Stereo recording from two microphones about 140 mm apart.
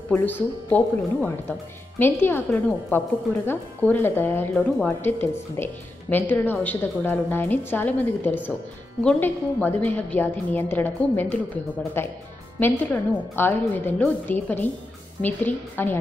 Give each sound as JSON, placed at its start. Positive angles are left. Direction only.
{"t": 0.1, "sound": "a woman's voice", "side_deg": 15}